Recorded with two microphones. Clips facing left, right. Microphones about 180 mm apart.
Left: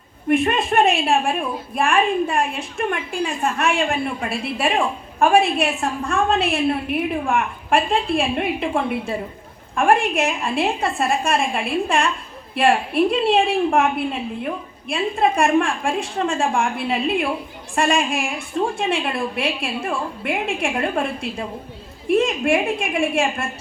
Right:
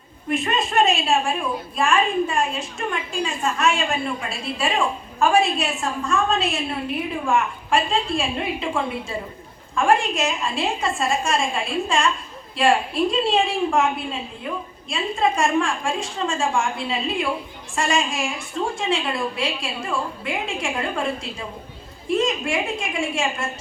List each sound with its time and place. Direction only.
0.3 s a woman's voice: 60° left (ahead or behind)